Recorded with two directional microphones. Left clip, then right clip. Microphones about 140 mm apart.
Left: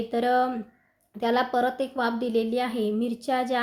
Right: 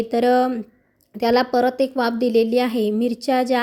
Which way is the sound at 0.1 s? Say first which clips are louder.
Right 6 dB; 50° right (ahead or behind).